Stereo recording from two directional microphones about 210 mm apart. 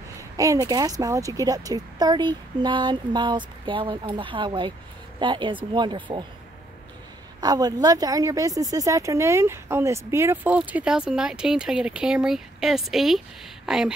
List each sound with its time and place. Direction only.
0.4 s a woman's voice: 15° right (ahead or behind)
7.3 s speech: 20° right (ahead or behind); by 13.9 s 5° right (ahead or behind)